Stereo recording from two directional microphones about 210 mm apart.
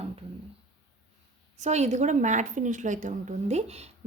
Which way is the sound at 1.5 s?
30° right (ahead or behind).